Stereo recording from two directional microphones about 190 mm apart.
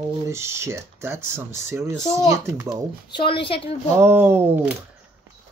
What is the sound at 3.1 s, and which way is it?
Speech, 25° left (ahead or behind).